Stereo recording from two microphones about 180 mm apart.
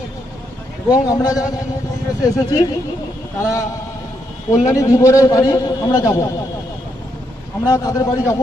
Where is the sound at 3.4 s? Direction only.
20° left (ahead or behind).